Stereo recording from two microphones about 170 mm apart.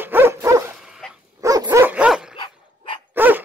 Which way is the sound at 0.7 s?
5° right (ahead or behind).